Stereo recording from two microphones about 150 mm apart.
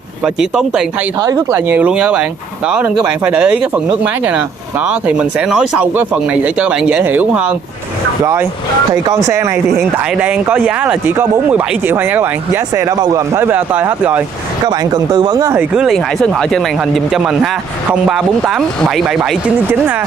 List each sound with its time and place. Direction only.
0.2 s speech: centre (ahead or behind)
1.2 s speech: 20° right (ahead or behind)
14.7 s speech: 30° right (ahead or behind)
15.5 s speech: 5° right (ahead or behind)